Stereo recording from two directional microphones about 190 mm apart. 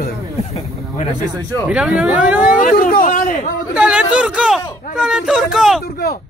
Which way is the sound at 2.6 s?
45° left (ahead or behind).